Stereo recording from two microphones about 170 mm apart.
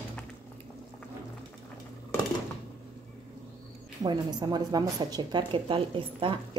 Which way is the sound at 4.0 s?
25° right (ahead or behind).